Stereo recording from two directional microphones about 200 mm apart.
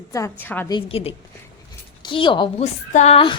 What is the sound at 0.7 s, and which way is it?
A woman's voice, 25° left (ahead or behind).